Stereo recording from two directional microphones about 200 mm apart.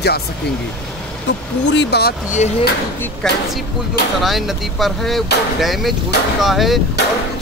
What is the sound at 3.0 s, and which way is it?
Speech, centre (ahead or behind).